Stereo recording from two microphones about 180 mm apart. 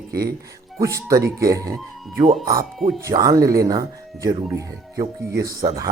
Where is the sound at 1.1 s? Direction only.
20° right (ahead or behind).